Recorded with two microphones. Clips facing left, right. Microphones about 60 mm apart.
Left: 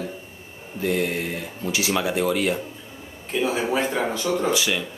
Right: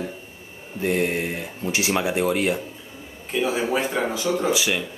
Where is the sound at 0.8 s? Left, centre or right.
Right.